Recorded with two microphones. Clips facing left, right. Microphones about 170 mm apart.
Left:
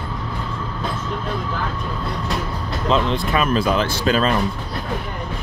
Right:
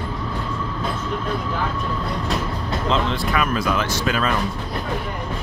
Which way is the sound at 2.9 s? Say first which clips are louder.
Left 4 dB; 20° left (ahead or behind).